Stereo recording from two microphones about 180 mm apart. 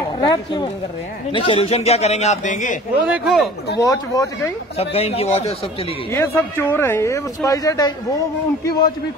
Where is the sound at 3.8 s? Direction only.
20° left (ahead or behind).